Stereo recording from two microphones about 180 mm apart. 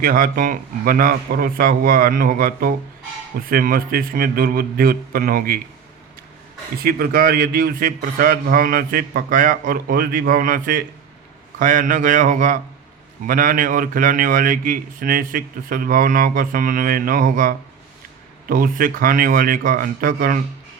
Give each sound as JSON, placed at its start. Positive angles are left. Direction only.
{"t": 0.0, "sound": "a man's voice", "side_deg": -50}
{"t": 6.8, "sound": "a man's voice", "side_deg": -55}